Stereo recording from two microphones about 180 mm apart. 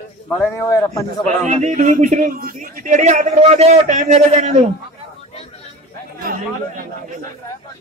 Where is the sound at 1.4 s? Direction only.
40° right (ahead or behind).